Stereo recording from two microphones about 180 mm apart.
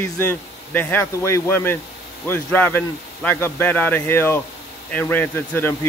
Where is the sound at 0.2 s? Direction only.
10° left (ahead or behind).